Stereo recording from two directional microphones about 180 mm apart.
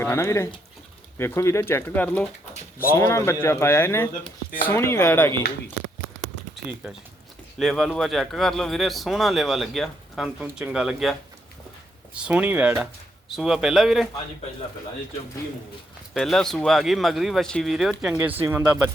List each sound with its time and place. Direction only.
0.0 s speech: 15° left (ahead or behind)
2.5 s a sound: 55° left (ahead or behind)
2.9 s speech: 15° left (ahead or behind)
7.6 s speech: centre (ahead or behind)
16.1 s speech: centre (ahead or behind)